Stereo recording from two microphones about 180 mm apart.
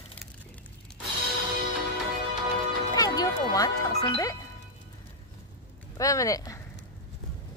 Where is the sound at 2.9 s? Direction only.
20° left (ahead or behind).